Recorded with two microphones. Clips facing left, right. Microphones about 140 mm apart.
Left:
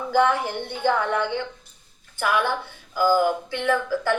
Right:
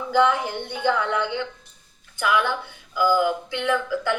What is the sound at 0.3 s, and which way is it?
Speech, 15° right (ahead or behind).